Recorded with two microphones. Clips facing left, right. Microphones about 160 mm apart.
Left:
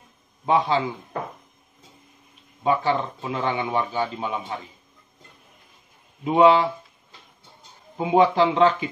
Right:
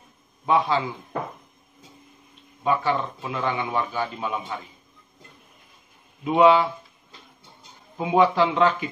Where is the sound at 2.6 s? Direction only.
25° left (ahead or behind).